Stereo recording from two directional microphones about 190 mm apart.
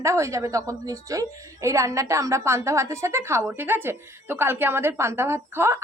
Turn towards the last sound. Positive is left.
turn(degrees=-15)  # may be behind; listen again after turning